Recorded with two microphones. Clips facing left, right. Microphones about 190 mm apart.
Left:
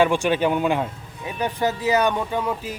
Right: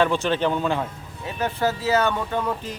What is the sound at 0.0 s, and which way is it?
A man's voice, 10° left (ahead or behind).